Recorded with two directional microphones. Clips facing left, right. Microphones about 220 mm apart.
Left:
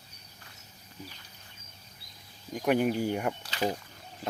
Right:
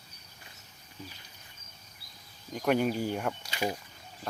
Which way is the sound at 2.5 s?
10° left (ahead or behind).